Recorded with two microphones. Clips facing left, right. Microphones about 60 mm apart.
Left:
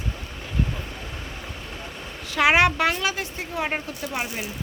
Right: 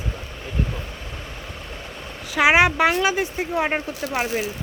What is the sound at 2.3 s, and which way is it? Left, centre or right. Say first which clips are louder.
Speech: right 2 dB; centre.